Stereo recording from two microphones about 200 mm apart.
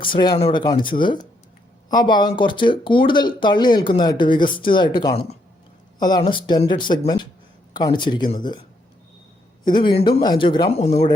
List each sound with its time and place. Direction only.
0.0 s speech: 25° left (ahead or behind)
9.6 s speech: 20° left (ahead or behind)